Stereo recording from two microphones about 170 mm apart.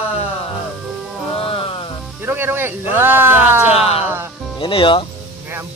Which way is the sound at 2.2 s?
15° right (ahead or behind).